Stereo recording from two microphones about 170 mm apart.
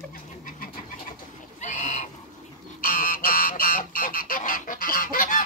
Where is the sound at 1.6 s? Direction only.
45° left (ahead or behind).